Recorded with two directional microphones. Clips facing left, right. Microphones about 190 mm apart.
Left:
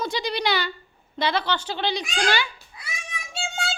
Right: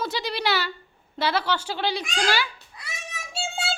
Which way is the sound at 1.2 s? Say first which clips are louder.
Even; 5° right (ahead or behind).